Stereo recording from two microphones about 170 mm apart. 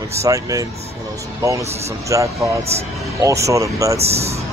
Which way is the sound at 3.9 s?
35° right (ahead or behind).